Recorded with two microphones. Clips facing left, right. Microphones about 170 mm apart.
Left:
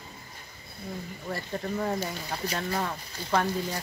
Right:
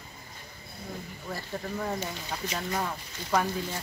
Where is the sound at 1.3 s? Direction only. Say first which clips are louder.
Left 3 dB; 5° left (ahead or behind).